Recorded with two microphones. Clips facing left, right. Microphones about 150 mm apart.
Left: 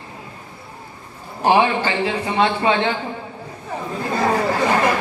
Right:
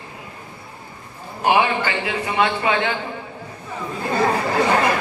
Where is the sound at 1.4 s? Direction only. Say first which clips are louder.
Left 2 dB; 30° left (ahead or behind).